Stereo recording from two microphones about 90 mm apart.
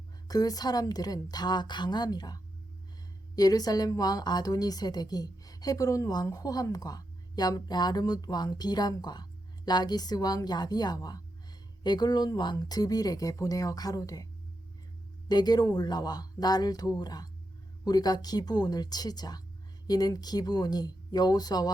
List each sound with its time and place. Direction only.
0.3 s a woman's voice: 45° left (ahead or behind)
15.3 s a woman's voice: 50° left (ahead or behind)